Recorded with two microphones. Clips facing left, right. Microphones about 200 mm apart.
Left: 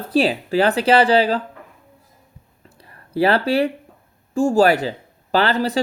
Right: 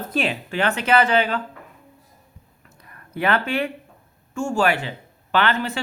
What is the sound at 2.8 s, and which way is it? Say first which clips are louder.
Speech: left 6 dB; 30° left (ahead or behind).